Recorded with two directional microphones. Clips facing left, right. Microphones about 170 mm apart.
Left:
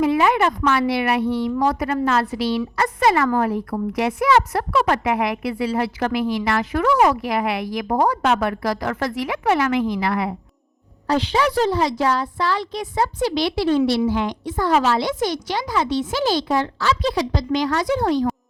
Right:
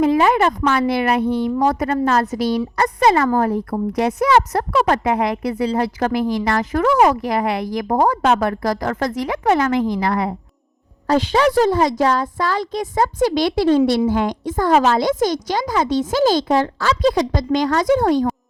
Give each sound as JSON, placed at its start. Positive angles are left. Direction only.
{"t": 0.0, "sound": "speech", "side_deg": -40}
{"t": 1.2, "sound": "speech", "side_deg": -20}
{"t": 1.5, "sound": "a woman's voice", "side_deg": -45}
{"t": 3.1, "sound": "speech", "side_deg": -25}
{"t": 3.3, "sound": "a woman's voice", "side_deg": -40}